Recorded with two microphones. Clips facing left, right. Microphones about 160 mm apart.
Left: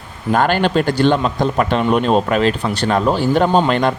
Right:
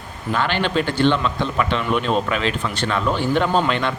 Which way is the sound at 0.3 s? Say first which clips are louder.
Left 6 dB; 45° left (ahead or behind).